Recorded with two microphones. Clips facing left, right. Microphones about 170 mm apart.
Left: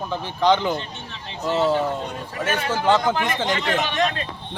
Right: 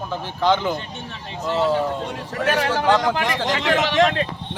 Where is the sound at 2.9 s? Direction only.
Centre (ahead or behind).